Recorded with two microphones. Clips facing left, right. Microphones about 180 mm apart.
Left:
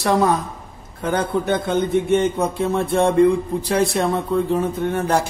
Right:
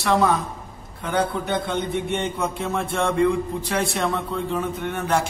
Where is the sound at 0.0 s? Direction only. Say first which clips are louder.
Left 2 dB; 40° left (ahead or behind).